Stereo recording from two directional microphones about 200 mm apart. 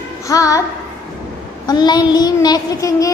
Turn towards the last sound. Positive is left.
turn(degrees=15)  # may be behind; listen again after turning